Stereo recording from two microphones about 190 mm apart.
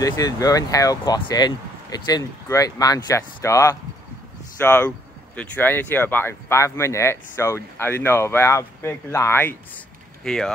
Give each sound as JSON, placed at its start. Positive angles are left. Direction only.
{"t": 0.0, "sound": "speech", "side_deg": 20}